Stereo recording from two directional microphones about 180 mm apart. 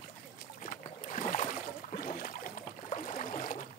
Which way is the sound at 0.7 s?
45° left (ahead or behind).